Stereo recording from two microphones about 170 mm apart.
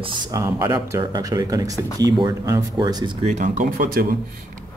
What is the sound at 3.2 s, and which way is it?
Speech, 45° right (ahead or behind).